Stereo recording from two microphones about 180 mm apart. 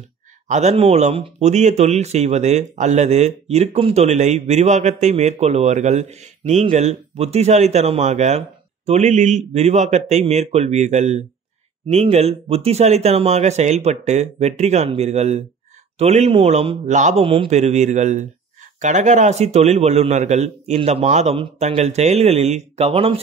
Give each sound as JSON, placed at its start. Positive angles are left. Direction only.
{"t": 0.5, "sound": "a man's voice", "side_deg": -40}